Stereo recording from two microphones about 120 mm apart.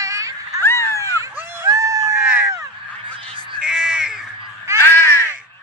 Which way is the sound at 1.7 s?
30° right (ahead or behind).